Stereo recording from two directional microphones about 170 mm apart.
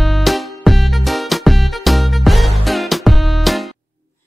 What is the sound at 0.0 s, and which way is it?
Music, centre (ahead or behind).